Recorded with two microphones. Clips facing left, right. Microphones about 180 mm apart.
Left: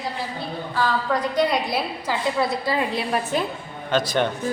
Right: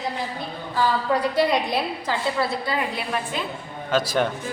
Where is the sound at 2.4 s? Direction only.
20° left (ahead or behind).